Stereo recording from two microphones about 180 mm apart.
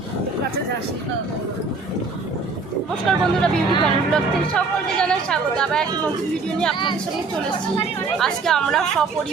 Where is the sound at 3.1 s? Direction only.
5° left (ahead or behind).